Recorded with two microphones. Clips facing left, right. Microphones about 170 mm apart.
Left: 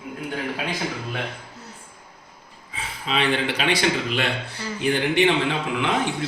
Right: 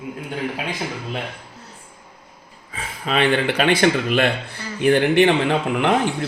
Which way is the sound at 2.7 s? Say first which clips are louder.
Right 3 dB; 50° right (ahead or behind).